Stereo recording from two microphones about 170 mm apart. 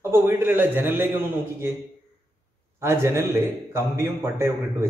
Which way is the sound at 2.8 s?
15° right (ahead or behind).